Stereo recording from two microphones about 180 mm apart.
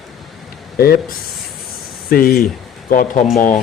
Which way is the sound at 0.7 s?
60° left (ahead or behind).